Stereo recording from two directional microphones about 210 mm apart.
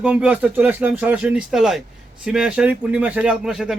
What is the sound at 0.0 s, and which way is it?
A man's voice, 5° right (ahead or behind).